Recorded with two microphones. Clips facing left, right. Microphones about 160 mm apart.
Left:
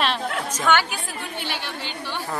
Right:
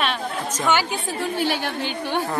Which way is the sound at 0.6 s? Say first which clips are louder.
Even; 10° right (ahead or behind).